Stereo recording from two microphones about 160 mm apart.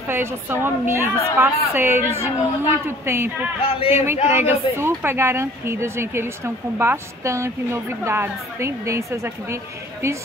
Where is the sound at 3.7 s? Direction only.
35° left (ahead or behind).